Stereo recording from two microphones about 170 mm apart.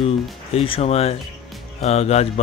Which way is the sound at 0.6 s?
35° left (ahead or behind).